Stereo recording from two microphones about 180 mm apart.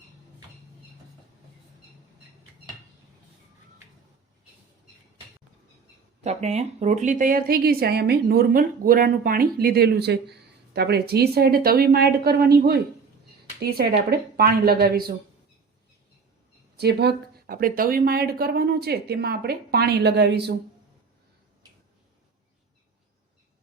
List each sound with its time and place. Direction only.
6.2 s a woman's voice: 40° right (ahead or behind); by 15.1 s 55° right (ahead or behind)
16.7 s a woman's voice: 65° right (ahead or behind)